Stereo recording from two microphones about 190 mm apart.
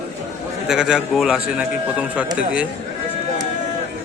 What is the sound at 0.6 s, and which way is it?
A man's voice, 5° right (ahead or behind).